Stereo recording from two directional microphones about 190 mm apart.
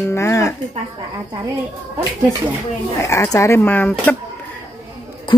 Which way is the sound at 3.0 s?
15° left (ahead or behind).